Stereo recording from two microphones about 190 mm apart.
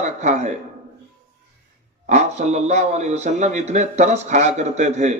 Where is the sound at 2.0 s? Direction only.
35° right (ahead or behind).